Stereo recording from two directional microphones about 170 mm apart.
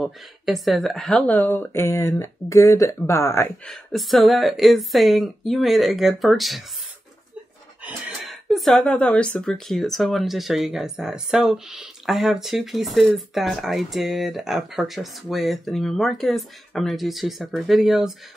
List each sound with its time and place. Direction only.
0.0 s speech: centre (ahead or behind); by 3.5 s 15° left (ahead or behind)
3.6 s speech: centre (ahead or behind)
7.8 s speech: centre (ahead or behind)